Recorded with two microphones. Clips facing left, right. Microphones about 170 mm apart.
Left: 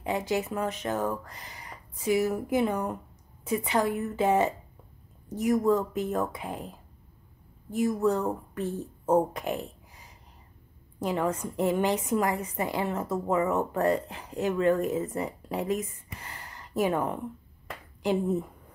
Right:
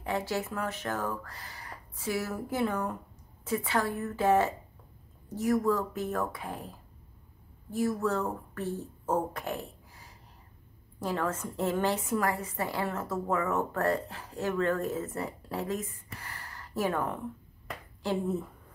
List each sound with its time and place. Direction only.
0.0 s a woman's voice: 20° left (ahead or behind)